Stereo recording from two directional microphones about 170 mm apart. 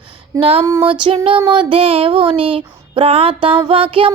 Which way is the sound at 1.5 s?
30° right (ahead or behind).